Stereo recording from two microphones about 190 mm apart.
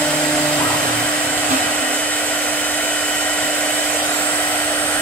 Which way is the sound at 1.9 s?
5° left (ahead or behind).